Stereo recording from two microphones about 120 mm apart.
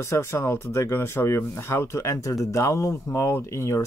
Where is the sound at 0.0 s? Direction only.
20° left (ahead or behind).